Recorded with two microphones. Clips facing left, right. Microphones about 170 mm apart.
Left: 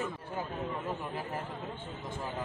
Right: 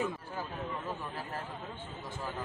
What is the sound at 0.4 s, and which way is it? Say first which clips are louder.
Speech: left 4 dB; 20° left (ahead or behind).